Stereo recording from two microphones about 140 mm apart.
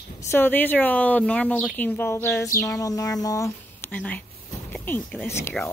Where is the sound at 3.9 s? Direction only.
10° left (ahead or behind).